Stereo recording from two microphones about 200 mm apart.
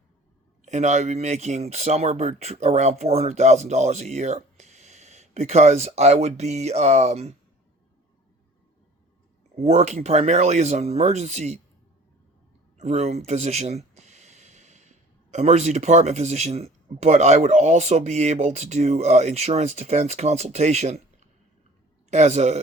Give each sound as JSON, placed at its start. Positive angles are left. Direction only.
{"t": 0.6, "sound": "speech", "side_deg": -35}
{"t": 9.6, "sound": "speech", "side_deg": -35}
{"t": 12.7, "sound": "speech", "side_deg": -30}